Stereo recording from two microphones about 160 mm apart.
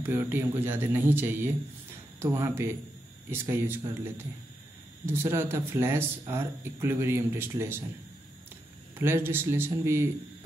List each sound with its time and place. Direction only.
0.0 s speech: 15° right (ahead or behind)
8.9 s speech: 15° right (ahead or behind)